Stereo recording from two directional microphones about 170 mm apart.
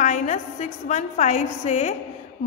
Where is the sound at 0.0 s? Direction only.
45° left (ahead or behind).